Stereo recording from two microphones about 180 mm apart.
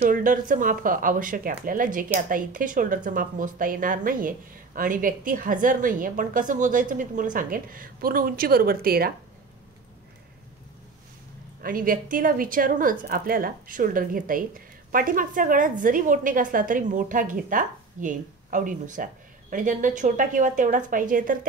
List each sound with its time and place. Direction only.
0.0 s speech: 50° right (ahead or behind)
11.6 s speech: 50° right (ahead or behind)